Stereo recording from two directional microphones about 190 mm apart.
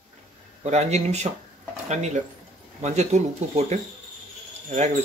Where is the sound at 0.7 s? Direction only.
35° right (ahead or behind).